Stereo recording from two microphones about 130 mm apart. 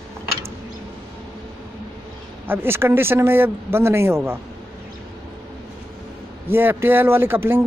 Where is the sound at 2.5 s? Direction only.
20° right (ahead or behind).